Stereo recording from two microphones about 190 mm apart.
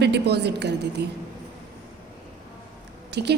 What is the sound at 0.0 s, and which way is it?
A woman's voice, 60° right (ahead or behind).